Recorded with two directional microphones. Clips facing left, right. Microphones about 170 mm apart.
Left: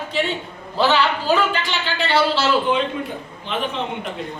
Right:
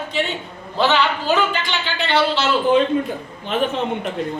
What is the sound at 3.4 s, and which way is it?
Speech, 45° right (ahead or behind).